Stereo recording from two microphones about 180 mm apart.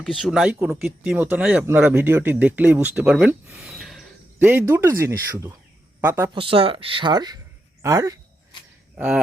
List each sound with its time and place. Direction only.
0.0 s speech: centre (ahead or behind)
6.3 s speech: 30° right (ahead or behind)
9.0 s speech: 5° right (ahead or behind)